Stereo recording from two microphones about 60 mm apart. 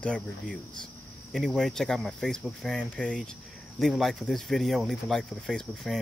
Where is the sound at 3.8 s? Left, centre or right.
Centre.